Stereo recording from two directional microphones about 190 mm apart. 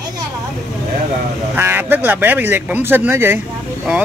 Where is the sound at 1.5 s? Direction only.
10° right (ahead or behind).